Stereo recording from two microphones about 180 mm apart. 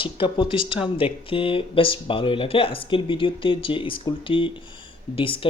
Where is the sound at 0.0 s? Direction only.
30° left (ahead or behind).